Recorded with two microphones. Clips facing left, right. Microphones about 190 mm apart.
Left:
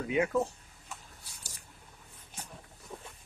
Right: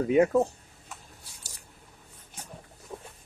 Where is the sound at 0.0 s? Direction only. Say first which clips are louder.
Right 8 dB; 40° right (ahead or behind).